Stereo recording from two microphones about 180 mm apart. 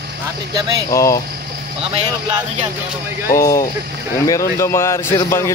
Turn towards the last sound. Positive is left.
turn(degrees=15)  # may be behind; listen again after turning